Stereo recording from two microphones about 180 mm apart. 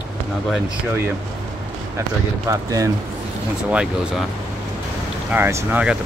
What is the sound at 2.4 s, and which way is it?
Speech, 15° right (ahead or behind).